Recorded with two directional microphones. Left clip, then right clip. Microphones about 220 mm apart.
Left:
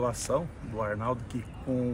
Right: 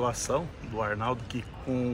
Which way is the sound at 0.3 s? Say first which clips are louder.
Even; 15° right (ahead or behind).